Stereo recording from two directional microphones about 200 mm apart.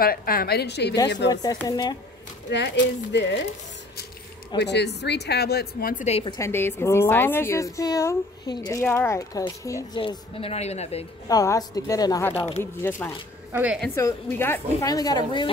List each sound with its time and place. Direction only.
0.0 s a woman's voice: 45° left (ahead or behind)
1.3 s speech: 20° left (ahead or behind)
2.5 s speech: 60° left (ahead or behind)
4.6 s speech: 55° left (ahead or behind)
6.0 s a woman's voice: 30° left (ahead or behind)
6.3 s a woman's voice: 15° left (ahead or behind); by 11.1 s 30° left (ahead or behind)
11.2 s a woman's voice: 20° left (ahead or behind)
13.5 s speech: 10° right (ahead or behind)
13.7 s a woman's voice: 10° left (ahead or behind)